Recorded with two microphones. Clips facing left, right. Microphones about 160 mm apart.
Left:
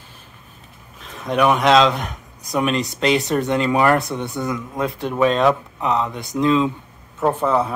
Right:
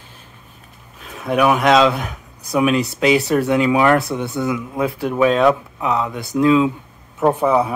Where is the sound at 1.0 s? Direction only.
5° right (ahead or behind).